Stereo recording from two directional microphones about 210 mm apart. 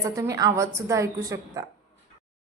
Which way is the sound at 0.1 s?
15° right (ahead or behind).